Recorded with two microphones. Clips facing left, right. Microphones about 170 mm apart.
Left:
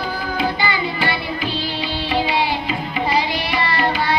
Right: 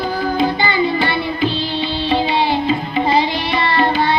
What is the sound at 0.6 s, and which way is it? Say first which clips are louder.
Music: right 5 dB; 25° right (ahead or behind).